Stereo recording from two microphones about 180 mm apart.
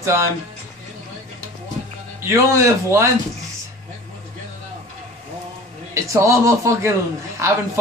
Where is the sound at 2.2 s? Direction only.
15° right (ahead or behind).